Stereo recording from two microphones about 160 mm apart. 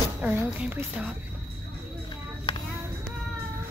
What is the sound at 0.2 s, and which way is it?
Speech, 10° right (ahead or behind).